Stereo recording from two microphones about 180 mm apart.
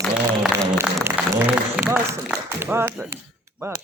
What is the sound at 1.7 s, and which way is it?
Speech, 10° right (ahead or behind).